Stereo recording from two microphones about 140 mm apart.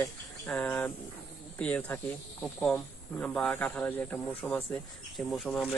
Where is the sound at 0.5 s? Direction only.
10° left (ahead or behind).